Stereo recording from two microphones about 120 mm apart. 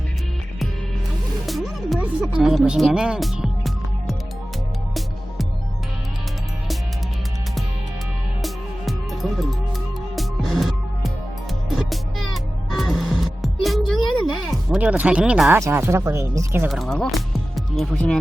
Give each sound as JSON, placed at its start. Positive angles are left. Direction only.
{"t": 1.5, "sound": "music", "side_deg": 0}
{"t": 8.4, "sound": "music", "side_deg": 0}
{"t": 14.2, "sound": "a sound", "side_deg": -5}
{"t": 15.5, "sound": "speech", "side_deg": -20}
{"t": 16.6, "sound": "speech", "side_deg": 0}